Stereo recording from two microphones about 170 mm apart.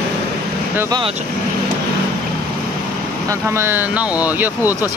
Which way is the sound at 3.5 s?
10° right (ahead or behind).